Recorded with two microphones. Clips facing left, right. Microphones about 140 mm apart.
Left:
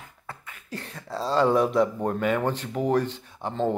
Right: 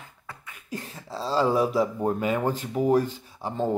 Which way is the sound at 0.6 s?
10° right (ahead or behind).